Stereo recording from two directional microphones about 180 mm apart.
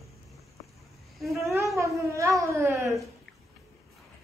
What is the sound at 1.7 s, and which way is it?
Cat, 15° right (ahead or behind).